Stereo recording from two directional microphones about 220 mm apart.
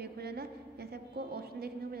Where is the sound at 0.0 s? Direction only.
45° right (ahead or behind).